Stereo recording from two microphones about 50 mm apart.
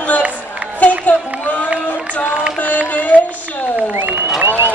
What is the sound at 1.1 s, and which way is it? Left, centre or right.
A woman's voice, left.